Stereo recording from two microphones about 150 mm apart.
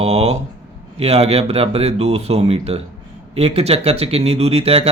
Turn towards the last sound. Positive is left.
turn(degrees=-40)  # may be behind; listen again after turning